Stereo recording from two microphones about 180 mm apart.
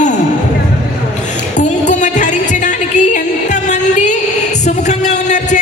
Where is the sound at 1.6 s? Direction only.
40° left (ahead or behind).